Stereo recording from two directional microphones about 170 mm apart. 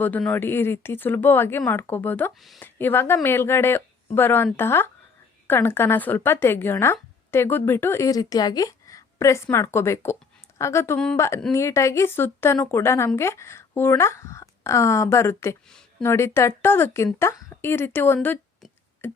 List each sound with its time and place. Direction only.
0.0 s speech: 5° left (ahead or behind)